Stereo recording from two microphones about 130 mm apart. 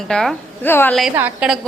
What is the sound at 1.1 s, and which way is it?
Speech, 10° right (ahead or behind).